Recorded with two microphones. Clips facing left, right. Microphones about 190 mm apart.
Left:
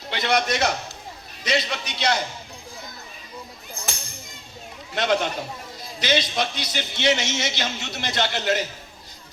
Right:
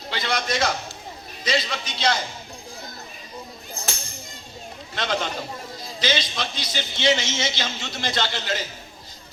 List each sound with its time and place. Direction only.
0.1 s a man's voice: 60° left (ahead or behind)
4.9 s a man's voice: 60° left (ahead or behind)